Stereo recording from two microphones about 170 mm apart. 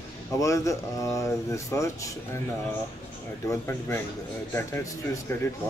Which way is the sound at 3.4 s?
15° left (ahead or behind).